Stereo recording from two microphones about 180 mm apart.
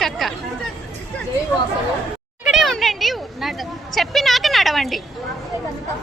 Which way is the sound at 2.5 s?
Centre (ahead or behind).